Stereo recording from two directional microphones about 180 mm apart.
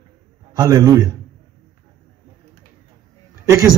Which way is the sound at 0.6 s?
20° right (ahead or behind).